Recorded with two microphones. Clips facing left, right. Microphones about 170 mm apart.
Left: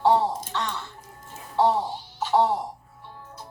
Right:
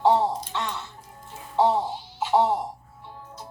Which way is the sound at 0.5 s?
15° right (ahead or behind).